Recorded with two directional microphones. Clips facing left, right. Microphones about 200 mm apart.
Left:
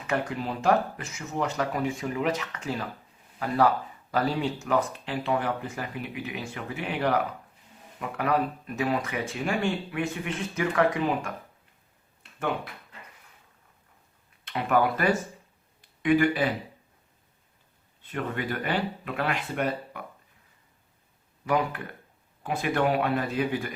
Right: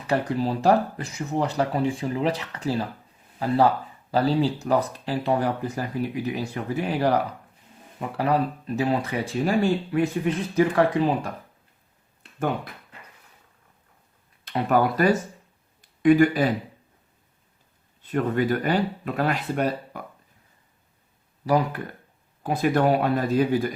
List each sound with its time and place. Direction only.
0.1 s speech: 35° right (ahead or behind)
14.4 s speech: 40° right (ahead or behind)
15.8 s a sound: 40° right (ahead or behind)
18.1 s speech: 40° right (ahead or behind)
21.4 s speech: 35° right (ahead or behind)